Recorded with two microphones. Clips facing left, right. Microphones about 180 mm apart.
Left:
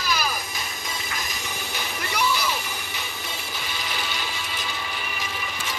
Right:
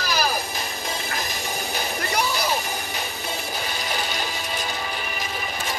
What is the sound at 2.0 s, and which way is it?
Music, 40° right (ahead or behind).